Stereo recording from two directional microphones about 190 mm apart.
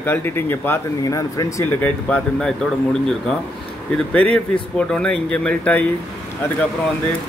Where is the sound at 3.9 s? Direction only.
5° left (ahead or behind).